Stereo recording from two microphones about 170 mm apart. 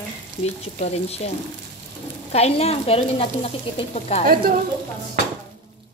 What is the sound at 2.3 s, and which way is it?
Speech, 40° left (ahead or behind).